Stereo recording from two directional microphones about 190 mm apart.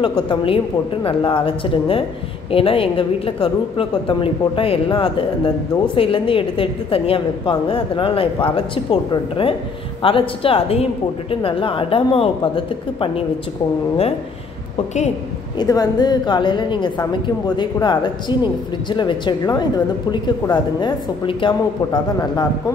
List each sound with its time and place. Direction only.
0.0 s a woman's voice: 25° left (ahead or behind)
15.5 s a woman's voice: 20° left (ahead or behind)